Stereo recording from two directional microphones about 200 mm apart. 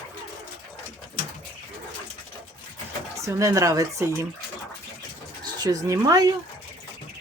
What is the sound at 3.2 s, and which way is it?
Speech, 15° right (ahead or behind).